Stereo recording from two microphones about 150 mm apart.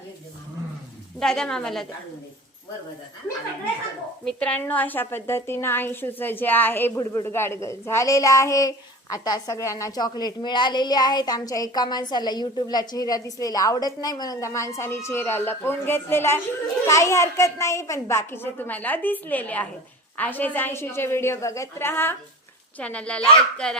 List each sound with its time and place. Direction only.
1.2 s a woman's voice: 5° left (ahead or behind)
4.3 s a woman's voice: 5° left (ahead or behind)